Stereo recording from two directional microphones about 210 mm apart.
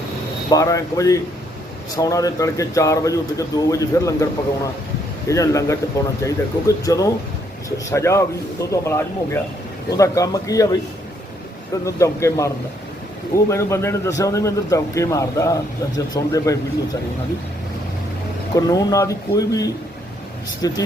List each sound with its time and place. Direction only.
0.5 s speech: 15° left (ahead or behind)
11.9 s speech: 15° left (ahead or behind)
18.5 s speech: 15° left (ahead or behind)